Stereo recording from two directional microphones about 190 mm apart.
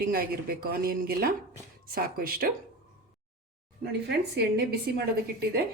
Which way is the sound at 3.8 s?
60° right (ahead or behind).